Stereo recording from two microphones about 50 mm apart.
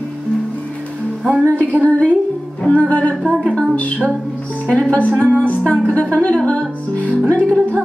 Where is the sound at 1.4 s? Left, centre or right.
Left.